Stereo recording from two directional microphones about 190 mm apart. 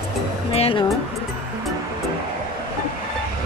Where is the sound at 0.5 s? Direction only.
30° left (ahead or behind).